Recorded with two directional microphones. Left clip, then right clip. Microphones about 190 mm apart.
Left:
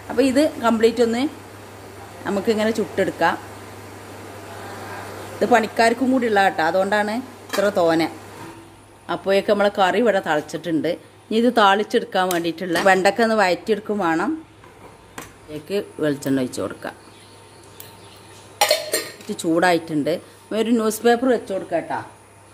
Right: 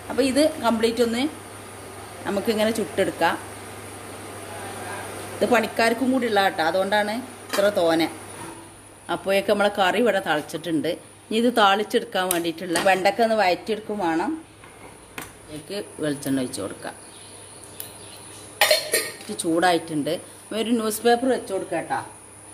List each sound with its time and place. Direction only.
0.1 s a woman's voice: 35° left (ahead or behind)
5.4 s a woman's voice: 25° left (ahead or behind)
9.0 s speech: 25° left (ahead or behind); by 14.3 s 45° left (ahead or behind)
15.7 s speech: 45° left (ahead or behind)
18.6 s speech: 45° left (ahead or behind)